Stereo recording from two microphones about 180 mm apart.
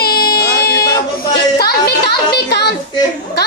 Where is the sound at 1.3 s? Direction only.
65° left (ahead or behind).